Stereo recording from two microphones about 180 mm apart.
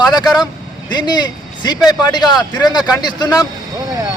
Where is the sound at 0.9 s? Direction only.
25° left (ahead or behind).